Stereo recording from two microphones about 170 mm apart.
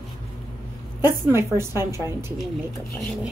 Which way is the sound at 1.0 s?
15° right (ahead or behind).